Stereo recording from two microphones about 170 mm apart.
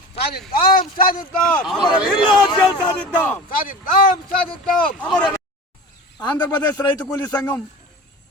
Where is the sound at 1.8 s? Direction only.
25° left (ahead or behind).